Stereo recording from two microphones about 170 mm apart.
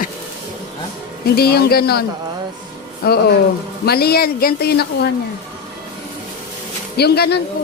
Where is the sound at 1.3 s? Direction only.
65° left (ahead or behind).